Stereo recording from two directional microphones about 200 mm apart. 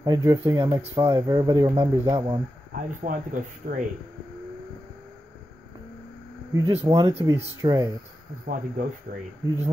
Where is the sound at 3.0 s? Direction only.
40° right (ahead or behind).